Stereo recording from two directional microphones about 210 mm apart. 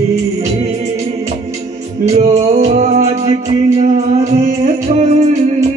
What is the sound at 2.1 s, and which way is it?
Music, 30° right (ahead or behind).